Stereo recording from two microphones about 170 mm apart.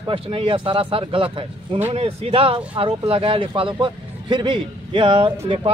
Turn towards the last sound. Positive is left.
turn(degrees=-35)  # may be behind; listen again after turning